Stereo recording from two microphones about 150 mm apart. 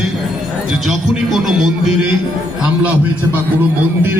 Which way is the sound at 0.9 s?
Centre (ahead or behind).